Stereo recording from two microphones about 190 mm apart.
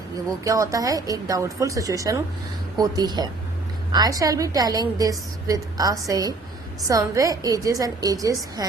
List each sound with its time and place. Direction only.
0.4 s a woman's voice: 15° right (ahead or behind)